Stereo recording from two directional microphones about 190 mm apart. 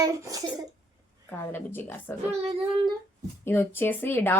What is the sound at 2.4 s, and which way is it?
Speech, 25° right (ahead or behind).